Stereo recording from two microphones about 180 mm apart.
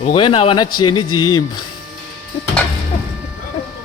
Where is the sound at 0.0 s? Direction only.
30° left (ahead or behind).